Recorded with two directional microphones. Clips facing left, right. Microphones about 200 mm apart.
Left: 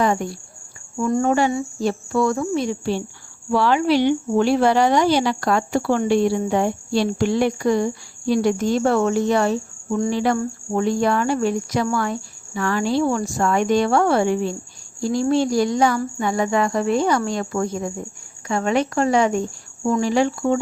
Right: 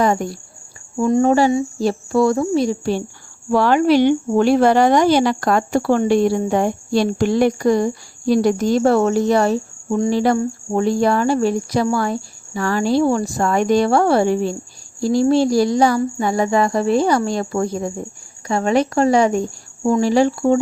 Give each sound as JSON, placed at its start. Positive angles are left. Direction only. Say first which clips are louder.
{"t": 0.0, "sound": "speech", "louder": "right 3 dB", "side_deg": -40}
{"t": 0.9, "sound": "speech", "louder": "right 4 dB", "side_deg": -25}